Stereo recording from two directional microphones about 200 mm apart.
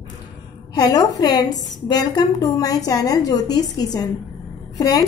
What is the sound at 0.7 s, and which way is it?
A woman's voice, 20° left (ahead or behind).